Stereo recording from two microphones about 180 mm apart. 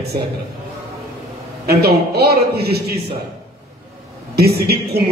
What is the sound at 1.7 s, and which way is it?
A man's voice, 60° right (ahead or behind).